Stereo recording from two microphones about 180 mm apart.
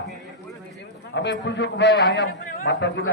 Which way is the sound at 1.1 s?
80° left.